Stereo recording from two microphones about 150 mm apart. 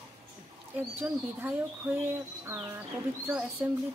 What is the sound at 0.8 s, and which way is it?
Speech, 10° right (ahead or behind).